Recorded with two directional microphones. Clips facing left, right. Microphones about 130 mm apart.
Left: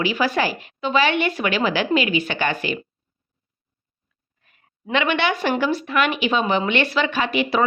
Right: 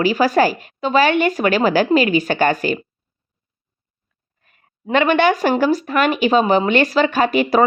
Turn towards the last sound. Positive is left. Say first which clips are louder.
# right 6 dB
turn(degrees=-45)  # may be behind; listen again after turning